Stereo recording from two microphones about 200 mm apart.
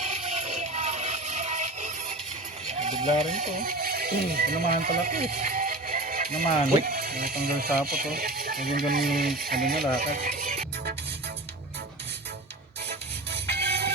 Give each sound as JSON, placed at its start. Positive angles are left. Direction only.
{"t": 0.0, "sound": "music", "side_deg": -35}
{"t": 2.6, "sound": "a sound", "side_deg": -35}
{"t": 3.6, "sound": "speech", "side_deg": -50}
{"t": 10.2, "sound": "music", "side_deg": -35}
{"t": 12.9, "sound": "music", "side_deg": -55}